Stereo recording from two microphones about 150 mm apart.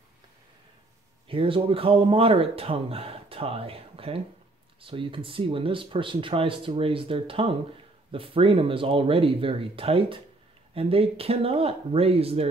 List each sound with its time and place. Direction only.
1.3 s speech: 35° right (ahead or behind)